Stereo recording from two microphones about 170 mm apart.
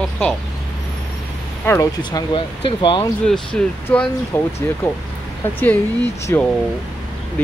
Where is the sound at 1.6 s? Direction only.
10° left (ahead or behind).